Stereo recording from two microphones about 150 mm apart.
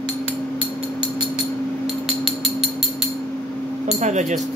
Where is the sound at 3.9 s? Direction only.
50° right (ahead or behind).